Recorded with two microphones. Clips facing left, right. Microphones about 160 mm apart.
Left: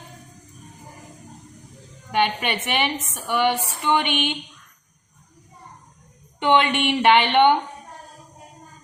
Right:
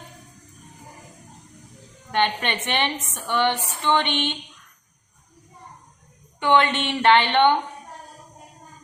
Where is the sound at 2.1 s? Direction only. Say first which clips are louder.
Left 1 dB; 10° left (ahead or behind).